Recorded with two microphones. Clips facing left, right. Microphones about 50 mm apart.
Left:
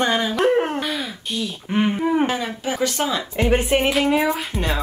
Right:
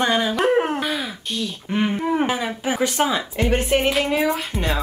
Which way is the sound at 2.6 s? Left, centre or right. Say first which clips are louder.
Right 4 dB; centre.